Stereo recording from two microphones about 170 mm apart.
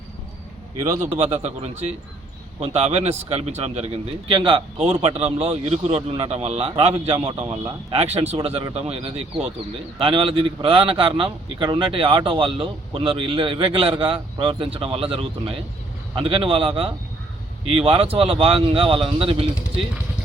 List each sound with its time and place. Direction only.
0.8 s a man's voice: 15° right (ahead or behind)
1.2 s speech: 40° right (ahead or behind)